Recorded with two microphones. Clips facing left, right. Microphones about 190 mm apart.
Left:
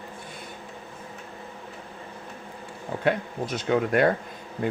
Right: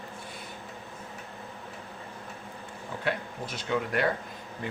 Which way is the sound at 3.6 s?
50° left (ahead or behind).